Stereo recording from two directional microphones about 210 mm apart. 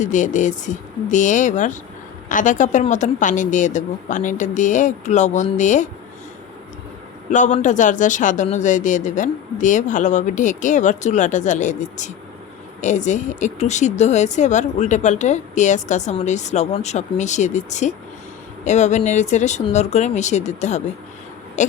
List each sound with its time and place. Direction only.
0.0 s speech: 35° left (ahead or behind)
7.3 s speech: 35° left (ahead or behind)